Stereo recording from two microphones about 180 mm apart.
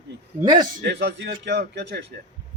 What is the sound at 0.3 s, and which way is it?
Speech, 20° right (ahead or behind).